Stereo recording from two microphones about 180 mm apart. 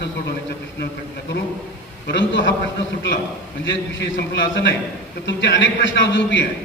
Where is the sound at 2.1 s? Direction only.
90° left.